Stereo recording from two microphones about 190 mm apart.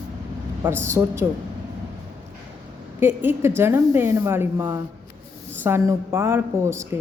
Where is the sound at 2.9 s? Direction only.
10° right (ahead or behind).